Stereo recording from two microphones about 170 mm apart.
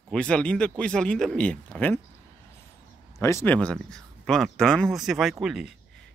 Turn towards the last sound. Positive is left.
turn(degrees=0)  # may be behind; listen again after turning